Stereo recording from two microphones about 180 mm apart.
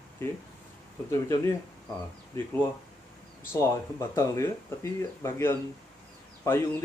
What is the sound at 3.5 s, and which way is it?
Speech, 15° left (ahead or behind).